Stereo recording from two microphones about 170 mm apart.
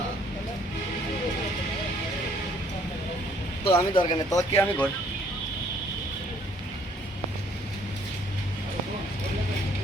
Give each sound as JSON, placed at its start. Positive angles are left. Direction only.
{"t": 3.6, "sound": "a man's voice", "side_deg": 30}
{"t": 4.4, "sound": "speech", "side_deg": 15}